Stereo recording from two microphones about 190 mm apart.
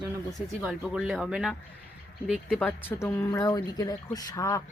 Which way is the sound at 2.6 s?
15° left (ahead or behind).